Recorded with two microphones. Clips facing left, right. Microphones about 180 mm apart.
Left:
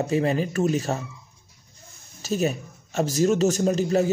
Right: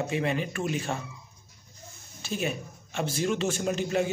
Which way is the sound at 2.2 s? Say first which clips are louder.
Left 6 dB; 40° left (ahead or behind).